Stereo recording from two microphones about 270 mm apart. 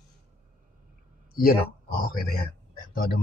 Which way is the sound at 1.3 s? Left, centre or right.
Left.